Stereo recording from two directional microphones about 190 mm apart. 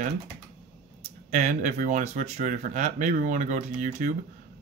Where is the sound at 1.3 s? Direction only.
40° right (ahead or behind).